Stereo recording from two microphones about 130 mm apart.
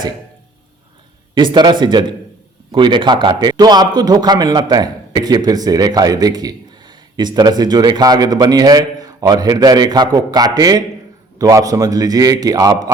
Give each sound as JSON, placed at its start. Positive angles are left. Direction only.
{"t": 1.4, "sound": "a man's voice", "side_deg": -35}